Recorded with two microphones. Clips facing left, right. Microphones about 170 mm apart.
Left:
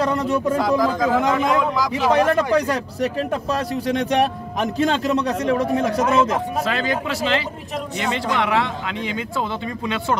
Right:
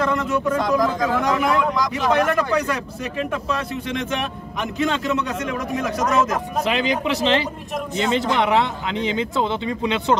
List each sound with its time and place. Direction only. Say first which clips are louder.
0.0 s speech: left 1 dB; 35° left (ahead or behind)
0.6 s speech: even; 5° left (ahead or behind)
0.8 s speech: left 2 dB; 25° left (ahead or behind)
1.6 s speech: left 1 dB; 5° left (ahead or behind)
2.2 s speech: left 2 dB; 30° left (ahead or behind)
6.6 s speech: right 1 dB; 15° right (ahead or behind)